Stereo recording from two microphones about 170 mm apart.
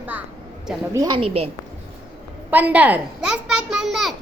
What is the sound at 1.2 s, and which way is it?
Speech, 35° right (ahead or behind).